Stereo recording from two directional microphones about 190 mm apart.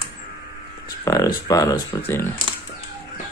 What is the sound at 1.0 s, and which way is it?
Speech, 20° left (ahead or behind).